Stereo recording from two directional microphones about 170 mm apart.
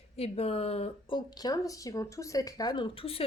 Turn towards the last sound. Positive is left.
turn(degrees=35)  # may be behind; listen again after turning